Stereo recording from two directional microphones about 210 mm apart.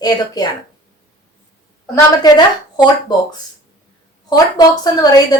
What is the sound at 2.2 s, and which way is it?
Speech, 20° left (ahead or behind).